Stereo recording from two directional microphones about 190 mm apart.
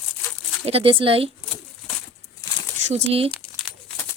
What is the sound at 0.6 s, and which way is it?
Speech, 30° right (ahead or behind).